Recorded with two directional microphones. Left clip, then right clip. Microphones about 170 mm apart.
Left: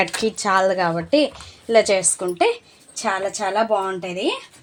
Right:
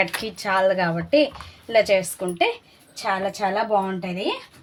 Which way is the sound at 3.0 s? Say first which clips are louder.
Left 1 dB; 45° left (ahead or behind).